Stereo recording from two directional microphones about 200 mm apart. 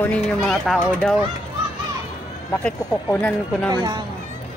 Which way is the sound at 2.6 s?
10° left (ahead or behind).